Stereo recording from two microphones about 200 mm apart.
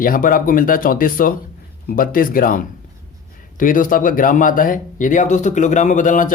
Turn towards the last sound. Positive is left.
turn(degrees=40)  # may be behind; listen again after turning